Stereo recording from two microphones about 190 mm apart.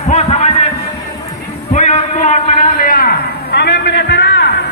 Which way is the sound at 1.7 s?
40° left (ahead or behind).